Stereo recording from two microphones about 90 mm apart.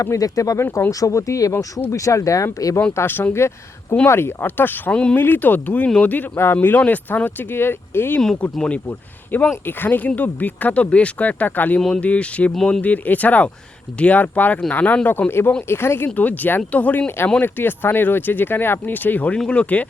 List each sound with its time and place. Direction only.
0.0 s speech: 40° left (ahead or behind)
2.9 s speech: 25° left (ahead or behind)
8.2 s speech: 5° left (ahead or behind)
8.9 s speech: 20° left (ahead or behind)